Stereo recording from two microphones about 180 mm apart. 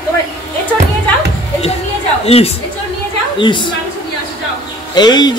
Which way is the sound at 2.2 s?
35° left (ahead or behind).